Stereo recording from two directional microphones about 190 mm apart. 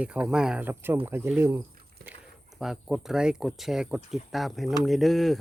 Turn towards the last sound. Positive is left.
turn(degrees=0)  # may be behind; listen again after turning